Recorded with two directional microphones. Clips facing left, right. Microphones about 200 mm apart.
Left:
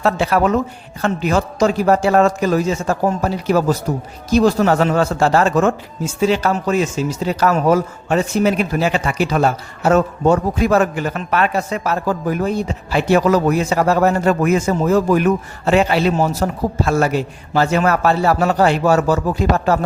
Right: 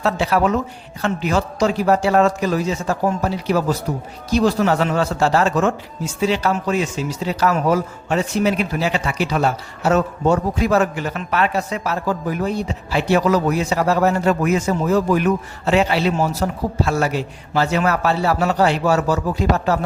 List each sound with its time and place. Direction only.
0.0 s speech: 50° left (ahead or behind)